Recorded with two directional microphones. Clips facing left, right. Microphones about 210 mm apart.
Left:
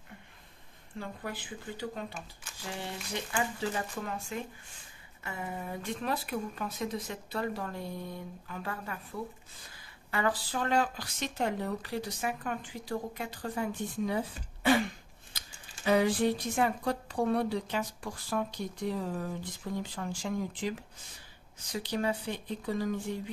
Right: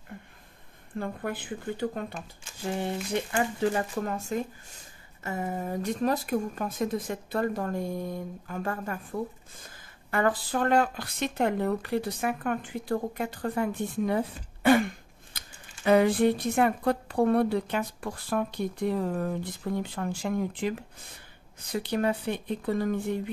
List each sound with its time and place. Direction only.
0.9 s speech: 55° right (ahead or behind)